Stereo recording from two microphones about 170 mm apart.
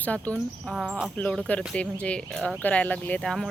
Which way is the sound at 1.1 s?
10° left (ahead or behind).